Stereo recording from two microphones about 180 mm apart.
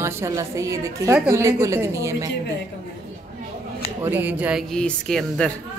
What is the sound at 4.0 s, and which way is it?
Speech, 10° right (ahead or behind).